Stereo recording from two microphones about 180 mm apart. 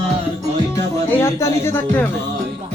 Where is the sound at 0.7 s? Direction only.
15° left (ahead or behind).